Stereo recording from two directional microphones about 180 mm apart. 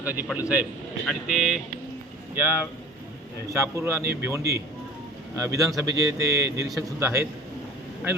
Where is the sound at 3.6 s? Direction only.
15° right (ahead or behind).